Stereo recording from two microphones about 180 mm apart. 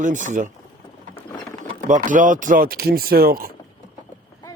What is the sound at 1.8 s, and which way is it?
Speech, 45° right (ahead or behind).